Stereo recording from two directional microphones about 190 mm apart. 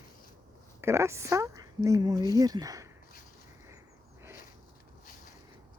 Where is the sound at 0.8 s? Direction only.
15° right (ahead or behind).